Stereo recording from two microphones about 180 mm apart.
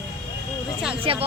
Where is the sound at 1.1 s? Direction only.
30° right (ahead or behind).